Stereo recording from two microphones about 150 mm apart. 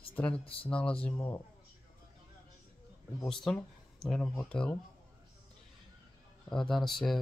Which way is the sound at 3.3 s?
5° left (ahead or behind).